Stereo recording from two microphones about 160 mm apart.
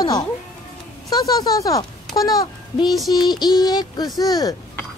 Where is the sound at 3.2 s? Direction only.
25° left (ahead or behind).